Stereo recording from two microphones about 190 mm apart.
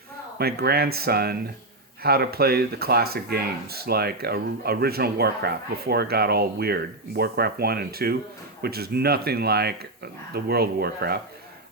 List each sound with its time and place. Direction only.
0.3 s speech: 55° right (ahead or behind)